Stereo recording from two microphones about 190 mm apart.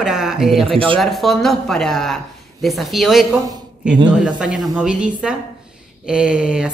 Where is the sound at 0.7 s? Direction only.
25° right (ahead or behind).